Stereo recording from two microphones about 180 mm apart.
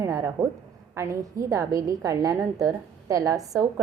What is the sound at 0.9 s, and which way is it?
A woman's voice, 20° right (ahead or behind).